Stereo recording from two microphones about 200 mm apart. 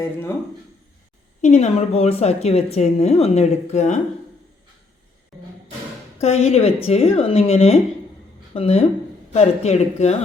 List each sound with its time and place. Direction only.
0.0 s speech: 10° left (ahead or behind)
1.4 s a woman's voice: 35° left (ahead or behind)
6.2 s a woman's voice: 30° left (ahead or behind)